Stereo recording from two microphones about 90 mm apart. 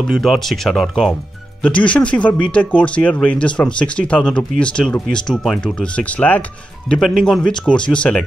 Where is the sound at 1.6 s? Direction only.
15° left (ahead or behind).